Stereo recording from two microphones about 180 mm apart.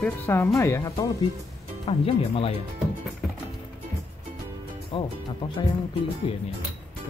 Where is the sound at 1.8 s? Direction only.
35° left (ahead or behind).